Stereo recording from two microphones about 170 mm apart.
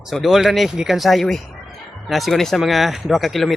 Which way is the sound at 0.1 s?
Centre (ahead or behind).